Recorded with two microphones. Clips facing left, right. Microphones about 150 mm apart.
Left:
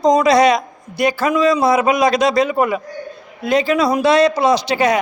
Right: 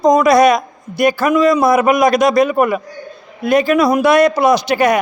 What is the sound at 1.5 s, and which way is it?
Speech, 30° left (ahead or behind).